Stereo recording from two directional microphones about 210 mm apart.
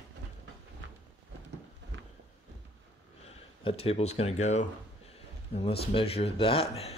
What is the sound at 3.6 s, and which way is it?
Speech, 30° left (ahead or behind).